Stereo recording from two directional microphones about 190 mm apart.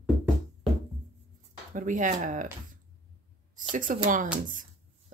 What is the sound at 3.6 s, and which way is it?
Speech, 45° right (ahead or behind).